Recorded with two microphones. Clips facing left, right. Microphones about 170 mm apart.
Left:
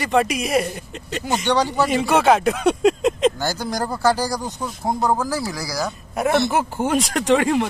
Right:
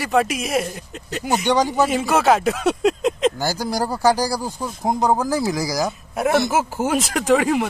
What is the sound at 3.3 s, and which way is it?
Speech, 10° right (ahead or behind).